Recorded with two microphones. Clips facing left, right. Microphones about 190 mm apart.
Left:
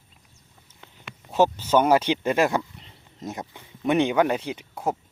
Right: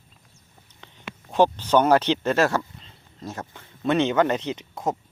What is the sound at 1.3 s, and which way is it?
Speech, 10° left (ahead or behind).